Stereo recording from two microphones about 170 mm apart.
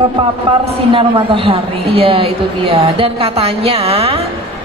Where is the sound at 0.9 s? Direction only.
30° right (ahead or behind).